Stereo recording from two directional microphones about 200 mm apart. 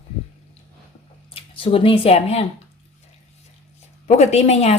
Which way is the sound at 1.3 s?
25° left (ahead or behind).